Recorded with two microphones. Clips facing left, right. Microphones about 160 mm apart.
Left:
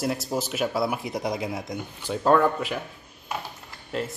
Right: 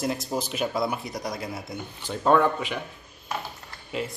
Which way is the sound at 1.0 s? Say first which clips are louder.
Left 4 dB; 25° left (ahead or behind).